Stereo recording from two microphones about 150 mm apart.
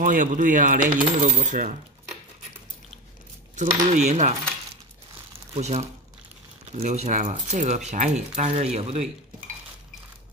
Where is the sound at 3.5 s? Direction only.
50° right (ahead or behind).